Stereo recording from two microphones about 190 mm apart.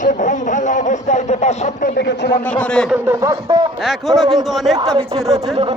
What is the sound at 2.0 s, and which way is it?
Speech, 60° left (ahead or behind).